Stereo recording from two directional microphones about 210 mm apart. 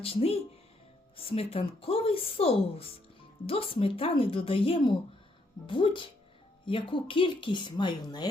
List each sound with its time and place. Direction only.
0.0 s a woman's voice: 30° left (ahead or behind)